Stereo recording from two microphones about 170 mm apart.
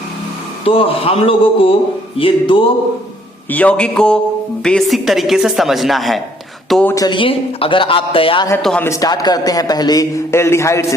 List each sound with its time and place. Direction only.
0.6 s a man's voice: 35° left (ahead or behind)
3.5 s a man's voice: 10° left (ahead or behind)
6.9 s a man's voice: 25° left (ahead or behind)
8.6 s a man's voice: 5° left (ahead or behind)
8.9 s speech: 20° left (ahead or behind)